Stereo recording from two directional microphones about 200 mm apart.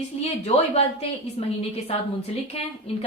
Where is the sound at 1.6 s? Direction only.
30° left (ahead or behind).